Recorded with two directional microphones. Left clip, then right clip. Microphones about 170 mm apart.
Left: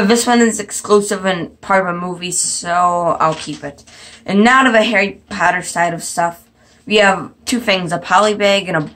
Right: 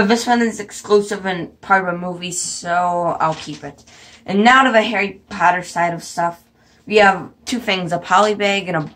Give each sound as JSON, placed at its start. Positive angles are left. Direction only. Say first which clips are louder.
{"t": 0.1, "sound": "speech", "louder": "left 4 dB", "side_deg": 20}
{"t": 2.1, "sound": "a woman's voice", "louder": "left 5 dB", "side_deg": 0}